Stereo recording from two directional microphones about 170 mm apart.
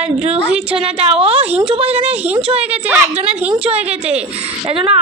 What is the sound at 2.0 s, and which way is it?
A woman's voice, 5° right (ahead or behind).